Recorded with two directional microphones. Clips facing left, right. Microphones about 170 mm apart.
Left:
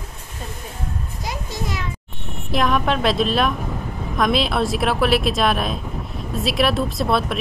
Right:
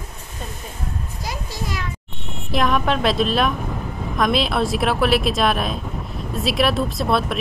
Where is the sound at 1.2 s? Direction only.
20° left (ahead or behind).